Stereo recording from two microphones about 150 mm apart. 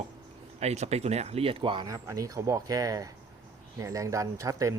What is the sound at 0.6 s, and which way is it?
Speech, 45° right (ahead or behind).